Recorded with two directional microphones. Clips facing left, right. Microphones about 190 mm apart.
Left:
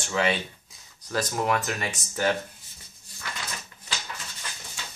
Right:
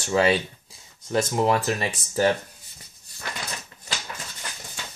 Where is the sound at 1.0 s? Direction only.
25° right (ahead or behind).